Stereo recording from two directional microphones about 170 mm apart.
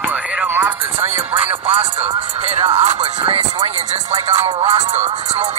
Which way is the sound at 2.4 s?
35° right (ahead or behind).